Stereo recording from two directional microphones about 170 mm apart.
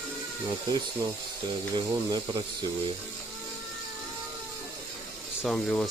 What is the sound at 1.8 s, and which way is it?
Speech, 25° right (ahead or behind).